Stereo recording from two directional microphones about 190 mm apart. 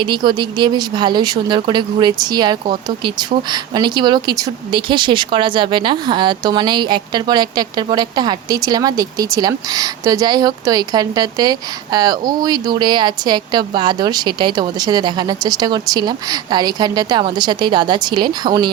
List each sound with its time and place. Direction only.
0.1 s speech: 25° right (ahead or behind)